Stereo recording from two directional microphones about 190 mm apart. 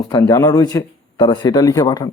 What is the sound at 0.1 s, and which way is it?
Speech, 20° left (ahead or behind).